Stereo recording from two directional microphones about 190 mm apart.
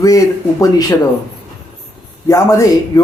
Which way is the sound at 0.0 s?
15° left (ahead or behind).